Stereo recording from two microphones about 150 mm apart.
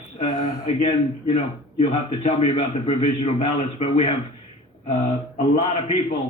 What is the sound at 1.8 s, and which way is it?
Speech, 40° left (ahead or behind).